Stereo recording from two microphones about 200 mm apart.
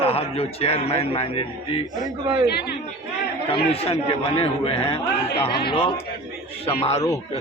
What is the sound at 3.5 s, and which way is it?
A man's voice, 30° left (ahead or behind).